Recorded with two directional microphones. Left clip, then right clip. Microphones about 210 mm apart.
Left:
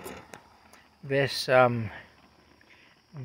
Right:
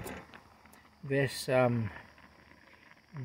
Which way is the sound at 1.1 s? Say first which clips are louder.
Left 6 dB; 5° right (ahead or behind).